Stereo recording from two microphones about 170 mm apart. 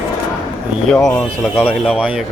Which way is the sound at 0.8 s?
5° left (ahead or behind).